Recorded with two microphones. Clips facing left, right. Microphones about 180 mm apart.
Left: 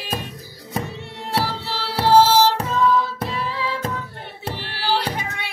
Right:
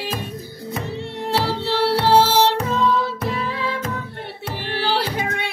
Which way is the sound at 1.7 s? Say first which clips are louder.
Right 1 dB; 60° right (ahead or behind).